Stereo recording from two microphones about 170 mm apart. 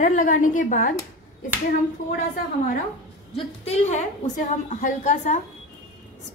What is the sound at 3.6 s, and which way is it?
A woman's voice, 40° left (ahead or behind).